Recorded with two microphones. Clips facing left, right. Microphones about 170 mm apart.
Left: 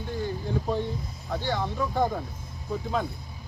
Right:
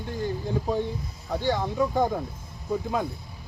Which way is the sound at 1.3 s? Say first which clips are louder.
Right 3 dB; 15° right (ahead or behind).